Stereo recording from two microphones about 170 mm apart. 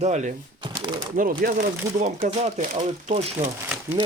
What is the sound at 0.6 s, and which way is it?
Shuffling cards, 25° right (ahead or behind).